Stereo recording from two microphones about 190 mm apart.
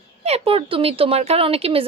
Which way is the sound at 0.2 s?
35° right (ahead or behind).